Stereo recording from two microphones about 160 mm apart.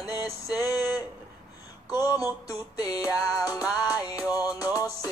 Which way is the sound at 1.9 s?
25° left (ahead or behind).